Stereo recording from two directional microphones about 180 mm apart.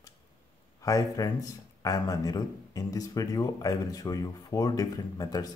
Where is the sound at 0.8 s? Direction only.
20° left (ahead or behind).